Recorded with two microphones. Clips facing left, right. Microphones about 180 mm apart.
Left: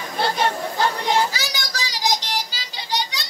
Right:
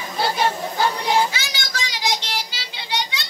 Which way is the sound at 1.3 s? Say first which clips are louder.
Left 1 dB; 40° left (ahead or behind).